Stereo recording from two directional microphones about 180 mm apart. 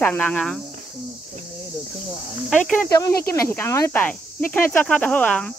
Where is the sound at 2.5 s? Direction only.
5° left (ahead or behind).